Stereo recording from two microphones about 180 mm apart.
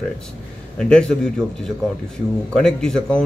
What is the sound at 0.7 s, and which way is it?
Speech, 5° left (ahead or behind).